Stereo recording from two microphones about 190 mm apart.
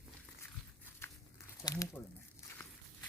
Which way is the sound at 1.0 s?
15° left (ahead or behind).